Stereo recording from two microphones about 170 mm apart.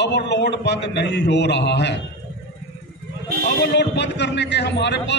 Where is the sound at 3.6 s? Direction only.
90° left.